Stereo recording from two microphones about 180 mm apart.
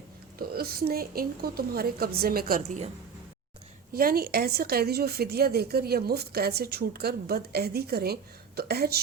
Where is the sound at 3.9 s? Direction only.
55° right (ahead or behind).